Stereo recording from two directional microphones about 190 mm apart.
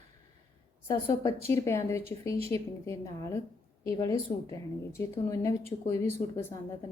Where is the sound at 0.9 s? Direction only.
20° left (ahead or behind).